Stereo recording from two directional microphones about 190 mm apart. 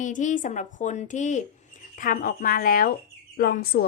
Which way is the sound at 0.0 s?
40° left (ahead or behind).